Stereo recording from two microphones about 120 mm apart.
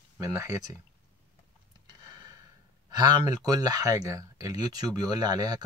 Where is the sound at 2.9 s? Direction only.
35° right (ahead or behind).